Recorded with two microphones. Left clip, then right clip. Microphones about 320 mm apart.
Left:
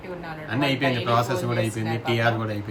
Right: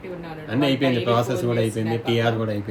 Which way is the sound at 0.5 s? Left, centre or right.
Centre.